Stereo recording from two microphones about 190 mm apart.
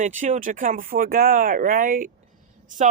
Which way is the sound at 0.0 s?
45° right (ahead or behind).